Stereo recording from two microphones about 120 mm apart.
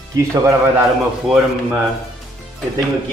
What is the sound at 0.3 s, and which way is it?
Speech, 25° right (ahead or behind).